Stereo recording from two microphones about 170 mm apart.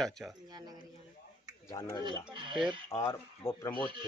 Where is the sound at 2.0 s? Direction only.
25° right (ahead or behind).